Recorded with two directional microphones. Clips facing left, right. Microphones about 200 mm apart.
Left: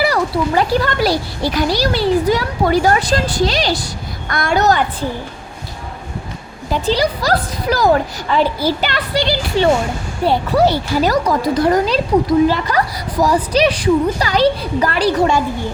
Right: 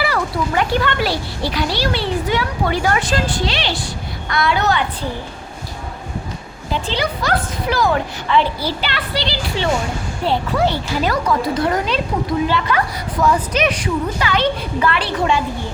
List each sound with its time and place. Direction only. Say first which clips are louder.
0.0 s a child's voice: left 4 dB; 35° left (ahead or behind)
6.8 s a child's voice: left 6 dB; 40° left (ahead or behind)